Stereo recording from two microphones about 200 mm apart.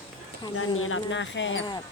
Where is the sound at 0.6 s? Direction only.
90° left; by 1.6 s 65° left (ahead or behind).